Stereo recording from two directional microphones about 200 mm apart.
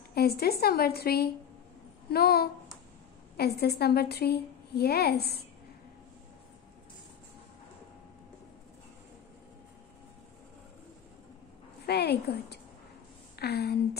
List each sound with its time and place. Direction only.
0.1 s a woman's voice: 50° left (ahead or behind)
11.8 s a sound: 55° left (ahead or behind)
13.4 s a woman's voice: 55° left (ahead or behind)